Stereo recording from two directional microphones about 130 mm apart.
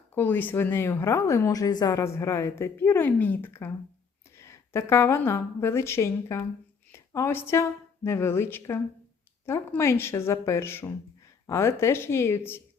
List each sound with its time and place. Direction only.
0.1 s a woman's voice: 15° left (ahead or behind)